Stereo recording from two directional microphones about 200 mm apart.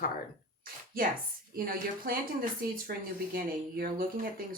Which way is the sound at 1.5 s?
45° right (ahead or behind).